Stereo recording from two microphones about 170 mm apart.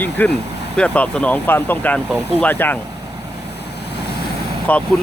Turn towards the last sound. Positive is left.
turn(degrees=5)  # may be behind; listen again after turning